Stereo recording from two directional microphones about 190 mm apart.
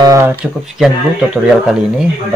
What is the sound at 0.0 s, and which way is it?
Speech, 15° right (ahead or behind).